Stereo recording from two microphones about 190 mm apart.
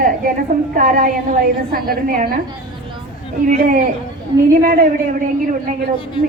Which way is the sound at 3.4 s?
40° right (ahead or behind).